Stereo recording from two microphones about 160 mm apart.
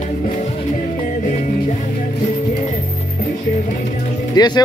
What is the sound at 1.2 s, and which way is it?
Music, 50° left (ahead or behind).